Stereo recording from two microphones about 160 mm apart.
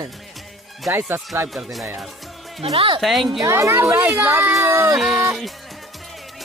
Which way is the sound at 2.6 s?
35° right (ahead or behind).